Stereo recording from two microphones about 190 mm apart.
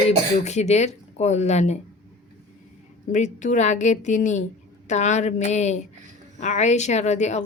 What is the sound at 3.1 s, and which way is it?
A woman's voice, 40° left (ahead or behind).